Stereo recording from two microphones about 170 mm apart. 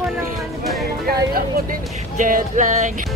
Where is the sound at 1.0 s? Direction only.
55° right (ahead or behind).